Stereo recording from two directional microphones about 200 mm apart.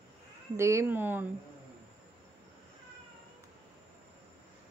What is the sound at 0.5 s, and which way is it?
Speech, 15° right (ahead or behind).